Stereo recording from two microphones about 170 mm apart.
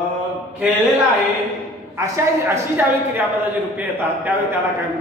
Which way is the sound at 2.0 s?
15° right (ahead or behind).